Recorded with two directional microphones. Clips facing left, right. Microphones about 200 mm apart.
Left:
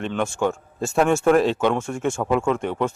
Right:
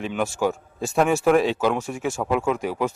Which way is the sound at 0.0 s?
5° right (ahead or behind).